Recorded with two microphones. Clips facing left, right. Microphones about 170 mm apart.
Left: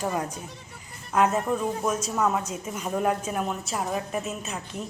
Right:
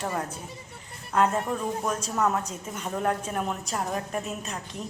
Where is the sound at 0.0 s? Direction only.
15° left (ahead or behind).